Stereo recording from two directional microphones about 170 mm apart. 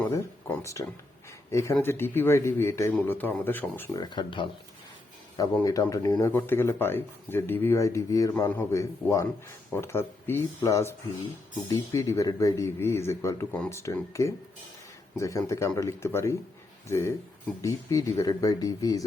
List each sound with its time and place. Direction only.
0.0 s a sound: 15° left (ahead or behind)
1.5 s speech: 15° left (ahead or behind)
3.9 s speech: 25° left (ahead or behind)
5.5 s speech: 20° left (ahead or behind)